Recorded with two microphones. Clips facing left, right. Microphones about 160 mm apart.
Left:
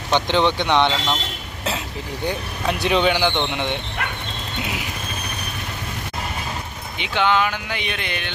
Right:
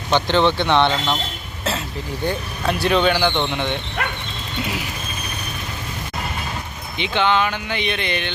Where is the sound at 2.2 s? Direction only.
15° left (ahead or behind).